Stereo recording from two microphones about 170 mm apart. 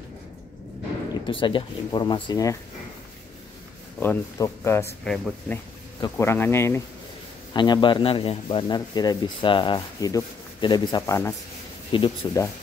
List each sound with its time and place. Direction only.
1.2 s speech: 30° left (ahead or behind)
4.0 s speech: 15° left (ahead or behind)
5.0 s speech: centre (ahead or behind)
5.9 s speech: 20° left (ahead or behind)
7.5 s speech: 25° left (ahead or behind)
11.9 s speech: 30° left (ahead or behind)